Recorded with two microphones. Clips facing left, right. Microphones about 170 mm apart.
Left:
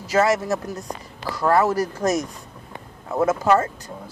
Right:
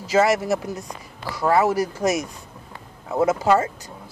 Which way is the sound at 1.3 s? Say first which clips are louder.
Even; 10° right (ahead or behind).